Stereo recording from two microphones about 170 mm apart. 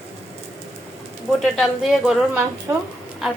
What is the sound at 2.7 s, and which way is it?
Speech, 15° right (ahead or behind).